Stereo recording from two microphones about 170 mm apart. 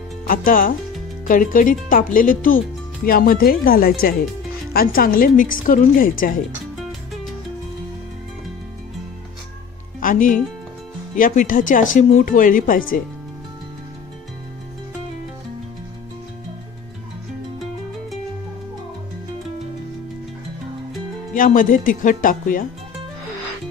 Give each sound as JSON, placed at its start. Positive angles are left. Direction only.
{"t": 0.3, "sound": "a woman's voice", "side_deg": 55}
{"t": 9.9, "sound": "speech", "side_deg": 50}
{"t": 21.3, "sound": "speech", "side_deg": 50}